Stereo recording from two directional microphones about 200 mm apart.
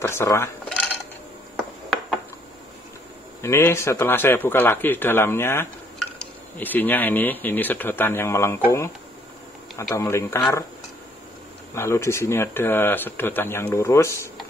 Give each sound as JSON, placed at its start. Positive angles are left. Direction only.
{"t": 0.0, "sound": "speech", "side_deg": 15}
{"t": 3.4, "sound": "speech", "side_deg": 15}
{"t": 9.9, "sound": "speech", "side_deg": 15}
{"t": 11.7, "sound": "speech", "side_deg": 15}